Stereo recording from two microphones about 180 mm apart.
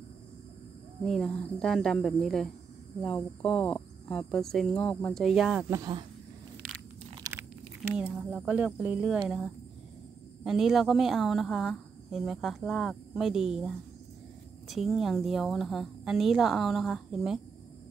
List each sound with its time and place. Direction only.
1.0 s a woman's voice: centre (ahead or behind)
5.7 s speech: 25° right (ahead or behind)
8.0 s speech: 5° right (ahead or behind)
10.4 s a woman's voice: centre (ahead or behind)